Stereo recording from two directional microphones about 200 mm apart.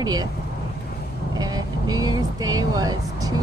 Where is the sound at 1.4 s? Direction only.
20° right (ahead or behind).